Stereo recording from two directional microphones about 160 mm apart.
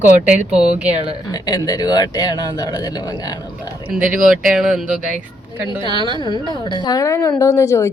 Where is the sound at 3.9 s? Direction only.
5° right (ahead or behind).